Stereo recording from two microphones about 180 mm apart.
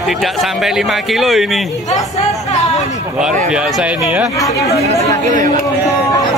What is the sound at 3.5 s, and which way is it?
Speech, 5° right (ahead or behind).